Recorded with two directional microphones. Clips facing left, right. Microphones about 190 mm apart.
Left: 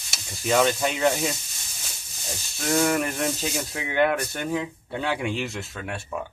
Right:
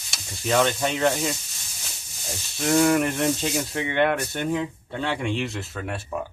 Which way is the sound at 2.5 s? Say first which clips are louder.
Right 3 dB; centre (ahead or behind).